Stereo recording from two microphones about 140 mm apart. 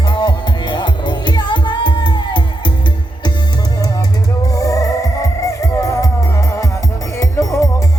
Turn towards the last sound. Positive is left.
turn(degrees=20)  # may be behind; listen again after turning